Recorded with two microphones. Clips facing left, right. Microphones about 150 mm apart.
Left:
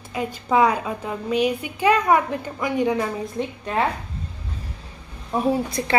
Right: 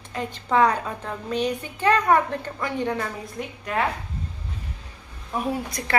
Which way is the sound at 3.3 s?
30° left (ahead or behind).